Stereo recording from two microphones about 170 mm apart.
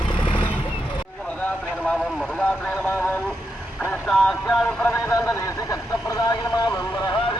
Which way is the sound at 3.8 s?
5° left (ahead or behind).